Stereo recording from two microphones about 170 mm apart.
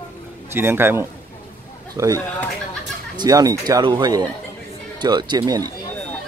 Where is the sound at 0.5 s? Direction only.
15° right (ahead or behind).